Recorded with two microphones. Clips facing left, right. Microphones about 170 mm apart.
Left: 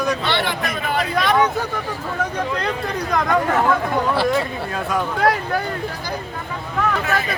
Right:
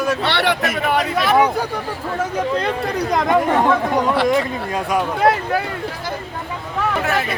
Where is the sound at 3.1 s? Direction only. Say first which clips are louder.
Right 2 dB; 20° right (ahead or behind).